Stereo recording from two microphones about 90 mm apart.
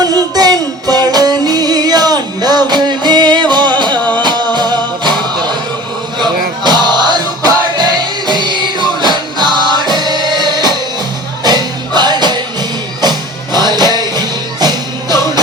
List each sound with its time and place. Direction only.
0.0 s music: 45° right (ahead or behind)
3.9 s music: 15° left (ahead or behind)
4.2 s music: 55° right (ahead or behind)